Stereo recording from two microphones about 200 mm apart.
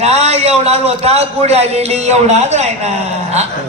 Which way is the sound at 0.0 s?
30° right (ahead or behind).